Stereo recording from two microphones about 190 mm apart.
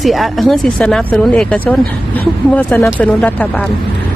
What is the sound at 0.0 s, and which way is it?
Speech, centre (ahead or behind).